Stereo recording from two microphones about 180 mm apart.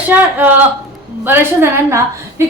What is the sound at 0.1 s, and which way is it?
A woman's voice, 10° right (ahead or behind).